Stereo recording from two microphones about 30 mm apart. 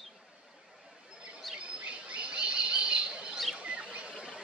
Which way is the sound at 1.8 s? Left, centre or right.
Right.